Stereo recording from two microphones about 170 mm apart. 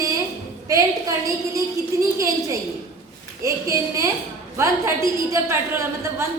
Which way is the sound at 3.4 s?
15° right (ahead or behind).